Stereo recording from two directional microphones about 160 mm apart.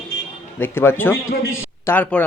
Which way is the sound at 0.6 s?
15° left (ahead or behind).